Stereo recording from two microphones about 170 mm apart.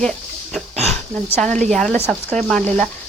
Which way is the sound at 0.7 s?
40° right (ahead or behind).